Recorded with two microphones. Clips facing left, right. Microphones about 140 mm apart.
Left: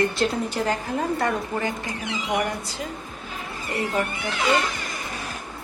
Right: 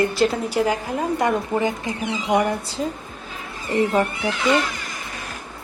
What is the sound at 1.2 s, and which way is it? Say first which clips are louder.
Speech: right 4 dB; 20° right (ahead or behind).